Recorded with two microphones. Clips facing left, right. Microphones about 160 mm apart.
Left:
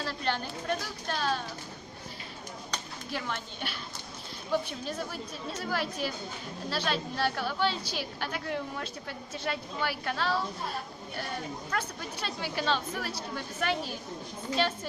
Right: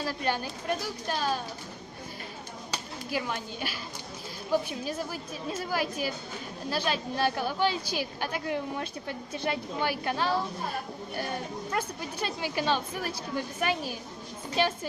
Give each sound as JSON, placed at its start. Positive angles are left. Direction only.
{"t": 0.0, "sound": "a sound", "side_deg": -10}
{"t": 1.0, "sound": "a woman's voice", "side_deg": -10}
{"t": 2.7, "sound": "a woman's voice", "side_deg": -10}
{"t": 11.7, "sound": "a woman's voice", "side_deg": -15}